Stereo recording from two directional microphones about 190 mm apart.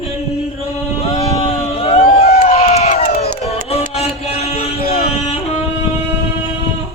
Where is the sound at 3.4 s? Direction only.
30° left (ahead or behind).